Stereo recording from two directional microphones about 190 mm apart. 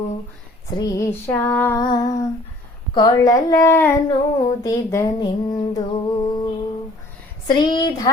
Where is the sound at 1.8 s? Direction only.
20° left (ahead or behind).